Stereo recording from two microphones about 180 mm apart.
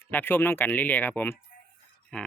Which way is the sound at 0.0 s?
10° left (ahead or behind).